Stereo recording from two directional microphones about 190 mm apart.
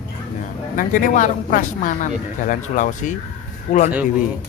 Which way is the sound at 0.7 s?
45° left (ahead or behind).